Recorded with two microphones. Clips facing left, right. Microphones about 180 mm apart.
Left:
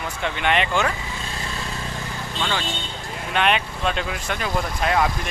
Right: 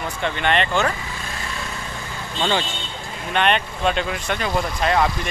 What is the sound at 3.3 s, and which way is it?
Speech, 5° left (ahead or behind).